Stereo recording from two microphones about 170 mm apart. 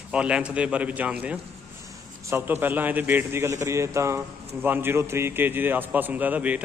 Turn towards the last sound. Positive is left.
turn(degrees=-10)  # may be behind; listen again after turning